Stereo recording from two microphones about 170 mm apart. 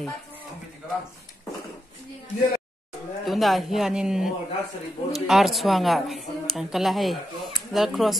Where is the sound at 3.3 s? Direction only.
Centre (ahead or behind).